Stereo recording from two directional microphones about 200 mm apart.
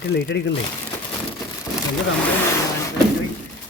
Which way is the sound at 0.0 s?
55° left (ahead or behind).